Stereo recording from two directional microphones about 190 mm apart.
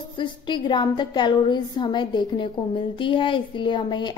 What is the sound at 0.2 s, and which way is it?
Speech, 25° left (ahead or behind).